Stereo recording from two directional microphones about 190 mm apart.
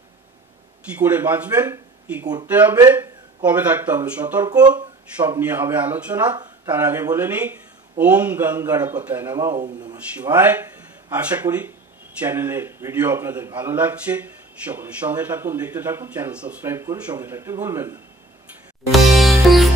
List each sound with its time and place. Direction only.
0.9 s speech: 10° right (ahead or behind)
4.5 s speech: 20° right (ahead or behind)
5.5 s speech: 10° right (ahead or behind)
6.3 s a sound: 20° right (ahead or behind)
6.7 s speech: 10° right (ahead or behind)
10.3 s speech: 10° right (ahead or behind)
18.9 s music: centre (ahead or behind)